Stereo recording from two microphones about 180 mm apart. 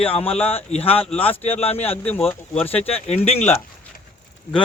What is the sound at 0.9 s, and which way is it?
Speech, 10° left (ahead or behind).